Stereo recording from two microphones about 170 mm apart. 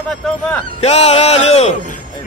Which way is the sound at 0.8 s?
40° left (ahead or behind).